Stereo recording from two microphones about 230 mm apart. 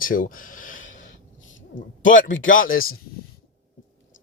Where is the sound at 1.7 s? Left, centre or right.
Left.